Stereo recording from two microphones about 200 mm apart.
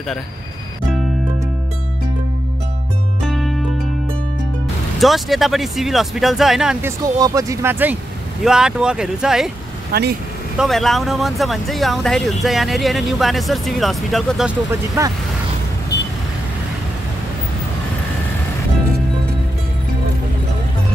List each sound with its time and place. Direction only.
3.3 s music: centre (ahead or behind)
5.0 s speech: centre (ahead or behind)
7.2 s speech: 15° right (ahead or behind)
9.9 s speech: 50° right (ahead or behind)
10.6 s speech: centre (ahead or behind)
14.7 s speech: 15° right (ahead or behind)